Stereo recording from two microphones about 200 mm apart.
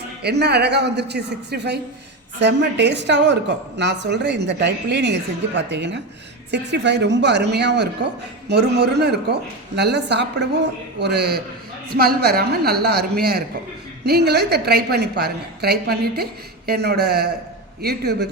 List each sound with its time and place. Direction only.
0.2 s a man's voice: 55° right (ahead or behind)